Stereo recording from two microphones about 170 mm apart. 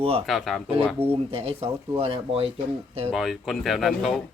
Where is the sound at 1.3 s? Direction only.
35° right (ahead or behind).